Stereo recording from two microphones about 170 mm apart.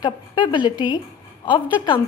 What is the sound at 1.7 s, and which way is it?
Speech, 30° left (ahead or behind).